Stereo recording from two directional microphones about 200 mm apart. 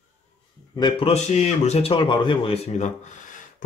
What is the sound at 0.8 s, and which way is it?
Speech, 25° left (ahead or behind).